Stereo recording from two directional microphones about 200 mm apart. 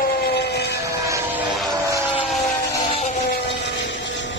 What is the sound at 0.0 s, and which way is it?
Siren, 50° left (ahead or behind).